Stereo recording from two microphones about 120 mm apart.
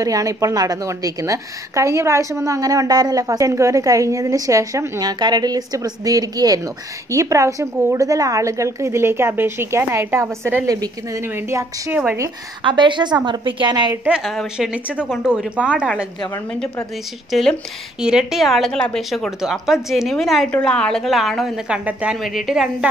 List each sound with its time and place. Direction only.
0.0 s a woman's voice: 30° right (ahead or behind)
12.6 s a woman's voice: 40° right (ahead or behind)
14.0 s a woman's voice: 5° right (ahead or behind)
16.5 s a woman's voice: 5° left (ahead or behind)